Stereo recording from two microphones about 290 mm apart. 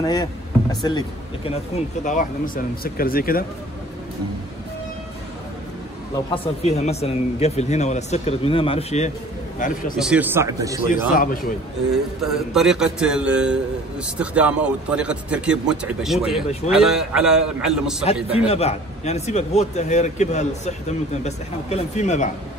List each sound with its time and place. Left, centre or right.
0.0 s speech: centre
2.0 s speech: left
6.1 s speech: centre
9.9 s speech: centre
10.9 s speech: left
11.9 s a man's voice: centre
18.5 s speech: left